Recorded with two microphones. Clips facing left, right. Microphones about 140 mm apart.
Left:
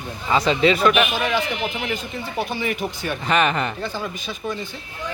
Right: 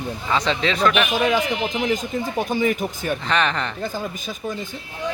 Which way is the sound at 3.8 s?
45° right (ahead or behind).